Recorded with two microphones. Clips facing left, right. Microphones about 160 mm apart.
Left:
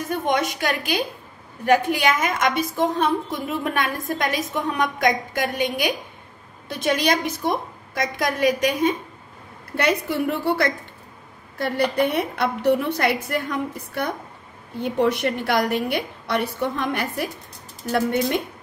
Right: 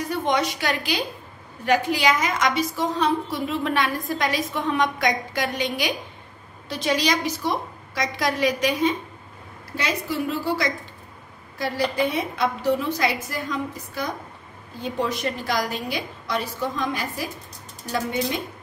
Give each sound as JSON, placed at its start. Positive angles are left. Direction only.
{"t": 0.3, "sound": "a woman's voice", "side_deg": 50}
{"t": 9.7, "sound": "a woman's voice", "side_deg": 60}